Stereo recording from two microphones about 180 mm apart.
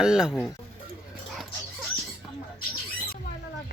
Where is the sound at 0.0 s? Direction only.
5° right (ahead or behind).